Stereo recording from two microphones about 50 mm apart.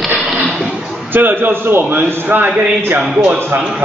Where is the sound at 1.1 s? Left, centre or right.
Right.